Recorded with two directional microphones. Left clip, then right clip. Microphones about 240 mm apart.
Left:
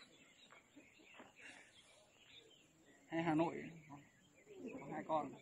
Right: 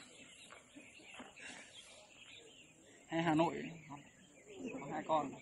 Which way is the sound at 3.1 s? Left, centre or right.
Right.